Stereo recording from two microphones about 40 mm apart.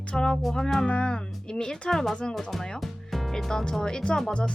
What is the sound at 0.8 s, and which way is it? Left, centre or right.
Speech, left.